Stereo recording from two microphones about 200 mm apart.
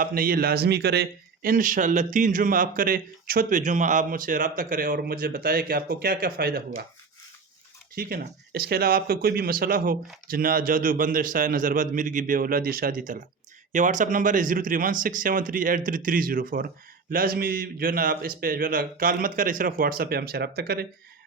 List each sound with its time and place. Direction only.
0.0 s speech: 45° right (ahead or behind)
7.9 s speech: 45° right (ahead or behind)